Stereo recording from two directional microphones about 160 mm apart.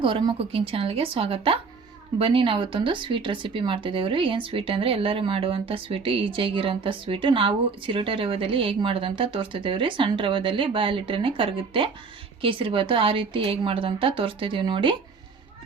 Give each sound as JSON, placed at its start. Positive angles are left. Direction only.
{"t": 0.0, "sound": "speech", "side_deg": -30}